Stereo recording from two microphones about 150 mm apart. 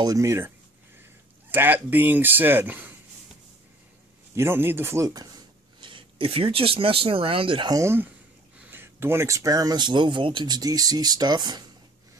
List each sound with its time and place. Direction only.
0.0 s speech: 20° right (ahead or behind)
1.5 s speech: 10° right (ahead or behind)
4.4 s speech: 15° right (ahead or behind); by 7.8 s 30° right (ahead or behind)
7.8 s speech: 15° right (ahead or behind)